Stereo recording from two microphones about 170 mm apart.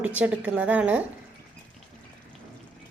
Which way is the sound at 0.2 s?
10° right (ahead or behind).